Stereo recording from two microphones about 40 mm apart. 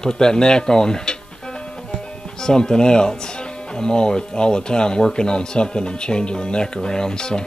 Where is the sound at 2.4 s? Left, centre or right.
Centre.